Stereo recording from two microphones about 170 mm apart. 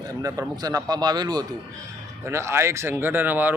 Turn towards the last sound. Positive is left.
turn(degrees=-10)  # may be behind; listen again after turning